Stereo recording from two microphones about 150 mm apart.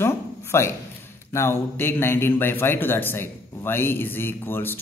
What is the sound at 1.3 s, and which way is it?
A man's voice, 15° left (ahead or behind).